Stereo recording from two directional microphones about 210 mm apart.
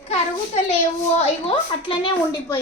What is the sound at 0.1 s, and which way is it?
A child's voice, 30° left (ahead or behind).